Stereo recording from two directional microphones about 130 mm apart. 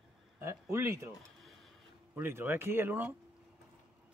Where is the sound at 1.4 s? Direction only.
Centre (ahead or behind).